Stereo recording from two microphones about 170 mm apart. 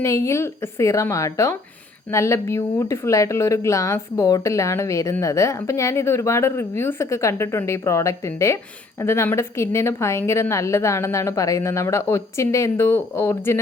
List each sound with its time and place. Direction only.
0.0 s speech: 15° left (ahead or behind)